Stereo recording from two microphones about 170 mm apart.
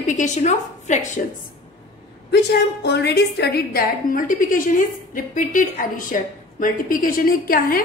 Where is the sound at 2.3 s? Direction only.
75° left (ahead or behind).